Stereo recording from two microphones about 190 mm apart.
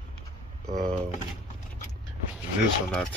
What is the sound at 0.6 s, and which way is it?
Speech, 35° right (ahead or behind).